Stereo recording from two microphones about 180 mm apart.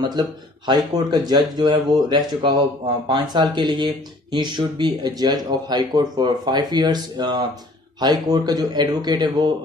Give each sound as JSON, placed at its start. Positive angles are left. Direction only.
{"t": 0.0, "sound": "speech", "side_deg": -25}